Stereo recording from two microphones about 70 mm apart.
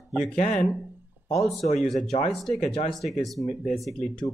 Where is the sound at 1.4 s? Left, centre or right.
Centre.